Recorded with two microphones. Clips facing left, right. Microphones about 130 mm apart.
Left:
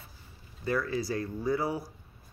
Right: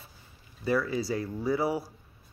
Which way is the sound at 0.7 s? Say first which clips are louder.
Right 3 dB; 10° right (ahead or behind).